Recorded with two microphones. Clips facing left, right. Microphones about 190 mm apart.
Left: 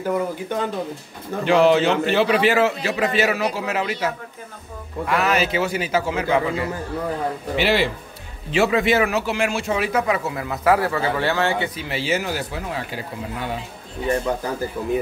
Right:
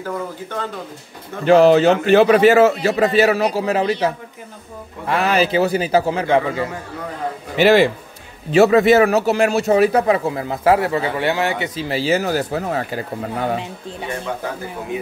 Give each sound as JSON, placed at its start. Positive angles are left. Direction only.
{"t": 0.0, "sound": "speech", "side_deg": 15}
{"t": 1.4, "sound": "a man's voice", "side_deg": -40}
{"t": 7.5, "sound": "a man's voice", "side_deg": -45}
{"t": 11.8, "sound": "speech", "side_deg": -35}